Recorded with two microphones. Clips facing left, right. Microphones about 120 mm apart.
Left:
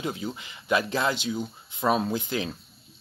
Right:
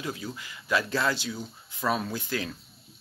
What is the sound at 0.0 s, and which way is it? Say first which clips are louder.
Speech: left 3 dB; 25° left (ahead or behind).